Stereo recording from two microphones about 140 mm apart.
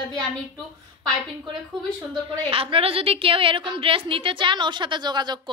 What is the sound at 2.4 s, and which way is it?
A woman's voice, 40° right (ahead or behind).